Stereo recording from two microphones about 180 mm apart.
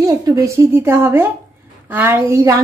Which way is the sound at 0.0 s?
20° right (ahead or behind).